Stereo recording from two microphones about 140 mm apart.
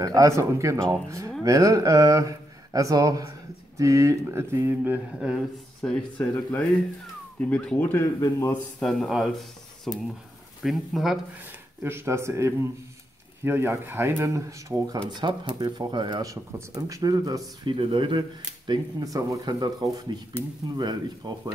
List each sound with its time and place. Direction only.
0.0 s speech: 25° right (ahead or behind)
5.3 s speech: 5° left (ahead or behind)
8.8 s speech: centre (ahead or behind)
11.8 s speech: 15° right (ahead or behind)
17.7 s speech: 35° right (ahead or behind)